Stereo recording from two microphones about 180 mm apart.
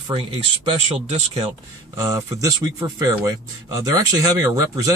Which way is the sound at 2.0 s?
20° right (ahead or behind).